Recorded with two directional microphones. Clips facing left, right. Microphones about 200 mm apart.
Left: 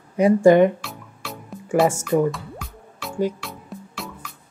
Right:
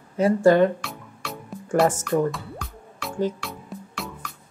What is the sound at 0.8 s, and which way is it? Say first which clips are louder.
Music: even; centre (ahead or behind).